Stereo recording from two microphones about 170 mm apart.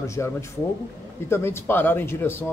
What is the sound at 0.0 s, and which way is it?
A man's voice, 15° left (ahead or behind).